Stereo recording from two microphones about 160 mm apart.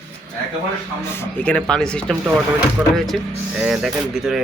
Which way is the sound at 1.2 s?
10° left (ahead or behind).